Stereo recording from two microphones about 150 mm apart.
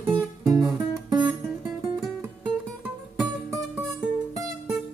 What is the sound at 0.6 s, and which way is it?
Guitar, 25° right (ahead or behind).